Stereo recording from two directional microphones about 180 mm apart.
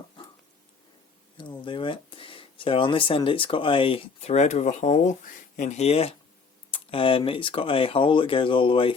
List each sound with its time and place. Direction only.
1.4 s speech: 25° left (ahead or behind)